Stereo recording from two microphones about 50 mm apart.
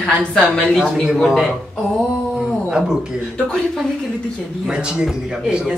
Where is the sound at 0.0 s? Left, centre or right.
Left.